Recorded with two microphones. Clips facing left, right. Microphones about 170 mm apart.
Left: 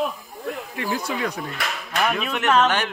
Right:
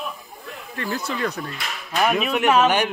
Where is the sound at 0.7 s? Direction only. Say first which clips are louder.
Right 1 dB; 10° left (ahead or behind).